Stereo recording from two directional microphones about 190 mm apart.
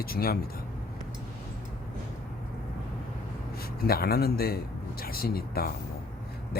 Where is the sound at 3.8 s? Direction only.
55° left (ahead or behind).